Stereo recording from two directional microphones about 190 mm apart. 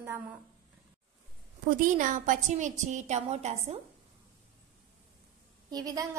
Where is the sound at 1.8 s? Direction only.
45° right (ahead or behind).